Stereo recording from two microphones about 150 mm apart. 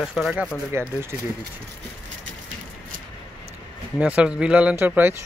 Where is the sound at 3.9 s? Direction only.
10° right (ahead or behind).